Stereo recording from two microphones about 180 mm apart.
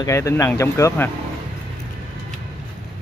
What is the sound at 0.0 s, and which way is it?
Speech, 15° left (ahead or behind).